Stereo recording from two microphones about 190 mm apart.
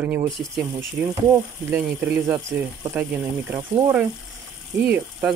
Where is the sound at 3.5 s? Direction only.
20° right (ahead or behind).